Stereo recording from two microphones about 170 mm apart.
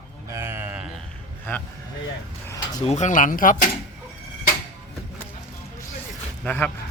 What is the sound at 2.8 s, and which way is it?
Speech, 45° left (ahead or behind).